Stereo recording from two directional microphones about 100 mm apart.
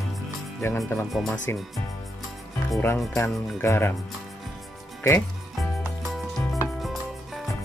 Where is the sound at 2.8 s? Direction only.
25° left (ahead or behind).